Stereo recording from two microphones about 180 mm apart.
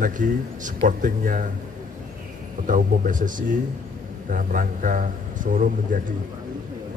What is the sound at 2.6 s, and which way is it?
Speech, 45° right (ahead or behind).